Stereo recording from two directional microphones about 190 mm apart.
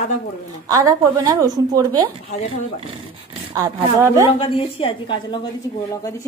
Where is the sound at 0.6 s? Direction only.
20° right (ahead or behind).